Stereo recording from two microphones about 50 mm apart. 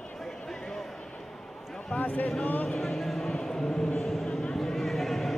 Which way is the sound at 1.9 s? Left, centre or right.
Left.